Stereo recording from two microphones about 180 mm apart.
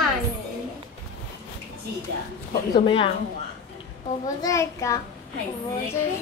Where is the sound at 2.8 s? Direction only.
30° left (ahead or behind).